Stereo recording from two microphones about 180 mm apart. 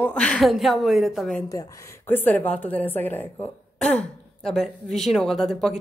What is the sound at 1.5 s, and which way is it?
A woman's voice, 20° left (ahead or behind).